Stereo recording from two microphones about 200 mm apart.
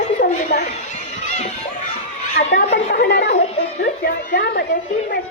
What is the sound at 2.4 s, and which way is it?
A woman's voice, 40° left (ahead or behind).